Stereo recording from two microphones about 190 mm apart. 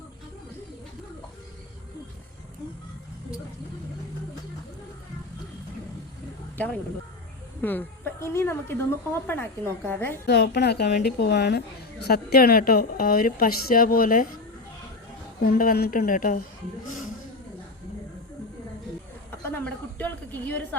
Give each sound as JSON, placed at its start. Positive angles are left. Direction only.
{"t": 7.6, "sound": "a woman's voice", "side_deg": 10}
{"t": 10.2, "sound": "a woman's voice", "side_deg": 60}
{"t": 15.4, "sound": "a woman's voice", "side_deg": 50}
{"t": 19.5, "sound": "a sound", "side_deg": 10}